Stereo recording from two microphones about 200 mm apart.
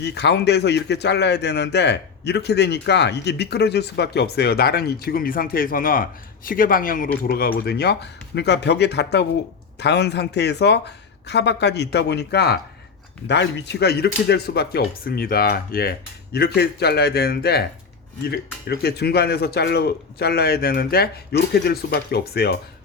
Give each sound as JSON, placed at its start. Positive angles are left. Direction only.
{"t": 0.0, "sound": "a man's voice", "side_deg": 60}